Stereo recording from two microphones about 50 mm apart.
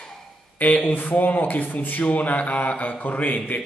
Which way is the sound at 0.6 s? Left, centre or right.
Left.